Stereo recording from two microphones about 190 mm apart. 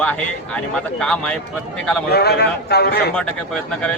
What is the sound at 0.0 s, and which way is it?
Speech, 5° left (ahead or behind).